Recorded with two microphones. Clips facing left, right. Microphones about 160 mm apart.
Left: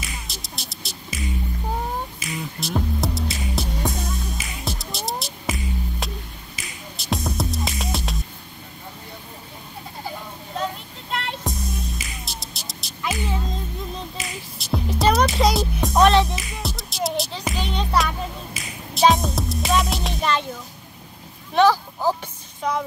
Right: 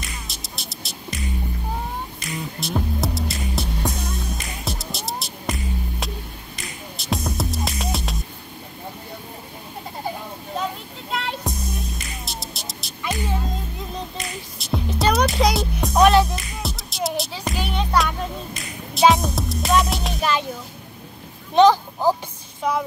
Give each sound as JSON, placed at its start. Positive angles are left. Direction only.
{"t": 0.0, "sound": "music", "side_deg": 0}
{"t": 11.1, "sound": "music", "side_deg": 0}
{"t": 17.6, "sound": "finger snapping", "side_deg": -5}
{"t": 21.5, "sound": "a sound", "side_deg": -20}